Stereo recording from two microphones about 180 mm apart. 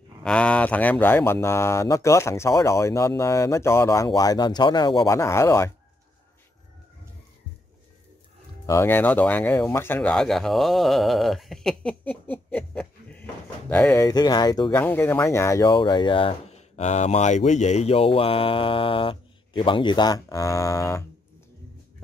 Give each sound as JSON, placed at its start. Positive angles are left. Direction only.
{"t": 0.2, "sound": "speech", "side_deg": 5}
{"t": 8.6, "sound": "speech", "side_deg": 15}
{"t": 14.0, "sound": "speech", "side_deg": 20}
{"t": 14.8, "sound": "speech", "side_deg": 10}